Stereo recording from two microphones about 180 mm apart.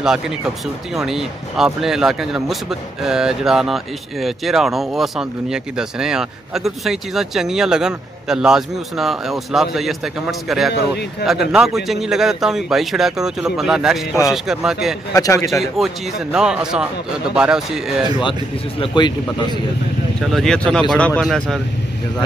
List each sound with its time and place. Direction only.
0.9 s speech: centre (ahead or behind)
10.7 s speech: 65° left (ahead or behind)
11.2 s speech: centre (ahead or behind)
15.1 s a man's voice: 20° left (ahead or behind)
15.4 s speech: centre (ahead or behind)
18.8 s speech: 25° left (ahead or behind)
20.2 s speech: 5° left (ahead or behind)